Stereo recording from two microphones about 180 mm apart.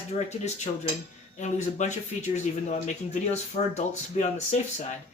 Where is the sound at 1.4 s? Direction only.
40° left (ahead or behind).